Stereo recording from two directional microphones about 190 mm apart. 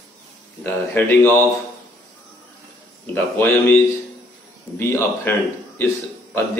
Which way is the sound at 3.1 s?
10° left (ahead or behind).